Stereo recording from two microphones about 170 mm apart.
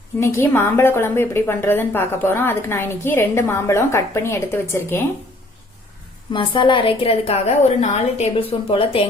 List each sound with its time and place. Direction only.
0.2 s a woman's voice: 15° left (ahead or behind)
6.3 s a woman's voice: 30° left (ahead or behind)